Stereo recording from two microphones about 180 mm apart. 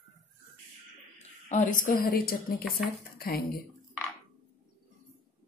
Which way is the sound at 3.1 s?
55° left (ahead or behind).